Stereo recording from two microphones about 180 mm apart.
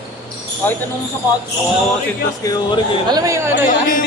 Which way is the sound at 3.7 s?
50° left (ahead or behind).